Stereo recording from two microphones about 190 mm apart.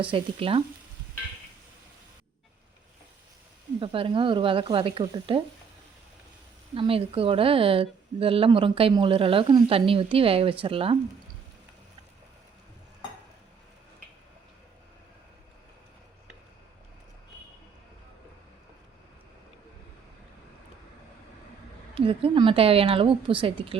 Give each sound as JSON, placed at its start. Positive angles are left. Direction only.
{"t": 0.0, "sound": "a woman's voice", "side_deg": -30}
{"t": 3.8, "sound": "a woman's voice", "side_deg": -25}
{"t": 6.7, "sound": "a woman's voice", "side_deg": -30}
{"t": 21.9, "sound": "a woman's voice", "side_deg": -30}